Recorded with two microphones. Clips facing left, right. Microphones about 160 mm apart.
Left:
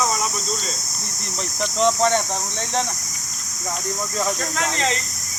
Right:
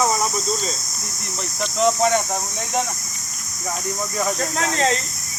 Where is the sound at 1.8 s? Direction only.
5° right (ahead or behind).